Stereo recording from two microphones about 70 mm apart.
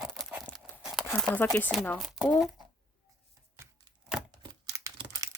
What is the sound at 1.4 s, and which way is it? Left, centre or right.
Speech, left.